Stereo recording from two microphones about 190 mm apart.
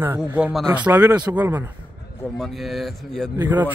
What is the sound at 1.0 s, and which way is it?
Speech, 20° right (ahead or behind).